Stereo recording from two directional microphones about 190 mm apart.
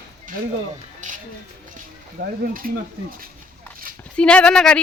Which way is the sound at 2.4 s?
50° right (ahead or behind).